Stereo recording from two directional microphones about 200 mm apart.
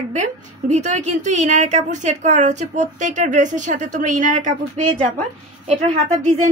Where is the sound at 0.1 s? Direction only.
35° right (ahead or behind).